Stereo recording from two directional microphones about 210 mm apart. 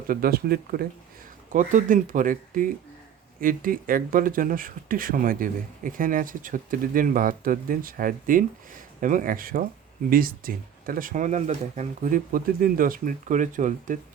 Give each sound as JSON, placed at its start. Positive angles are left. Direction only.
{"t": 0.1, "sound": "speech", "side_deg": -45}